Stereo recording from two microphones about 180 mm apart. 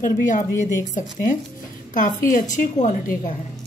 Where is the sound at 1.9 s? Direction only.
45° left (ahead or behind).